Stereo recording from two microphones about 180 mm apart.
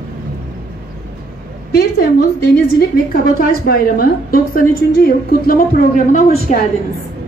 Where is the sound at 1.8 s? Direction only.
60° left (ahead or behind).